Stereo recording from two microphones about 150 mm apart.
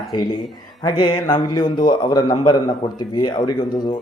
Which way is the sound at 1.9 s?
30° left (ahead or behind).